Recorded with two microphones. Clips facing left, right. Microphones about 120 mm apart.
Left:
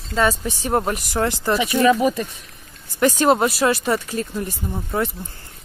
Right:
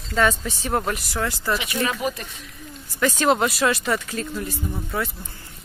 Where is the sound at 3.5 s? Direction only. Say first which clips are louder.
Left 3 dB; 35° left (ahead or behind).